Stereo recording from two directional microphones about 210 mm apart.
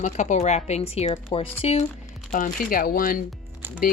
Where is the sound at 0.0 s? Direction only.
35° left (ahead or behind).